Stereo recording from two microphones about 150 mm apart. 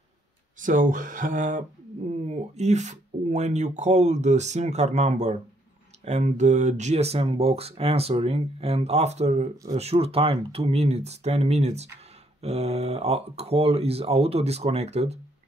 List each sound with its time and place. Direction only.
0.6 s speech: 60° right (ahead or behind)
2.0 s speech: 50° right (ahead or behind)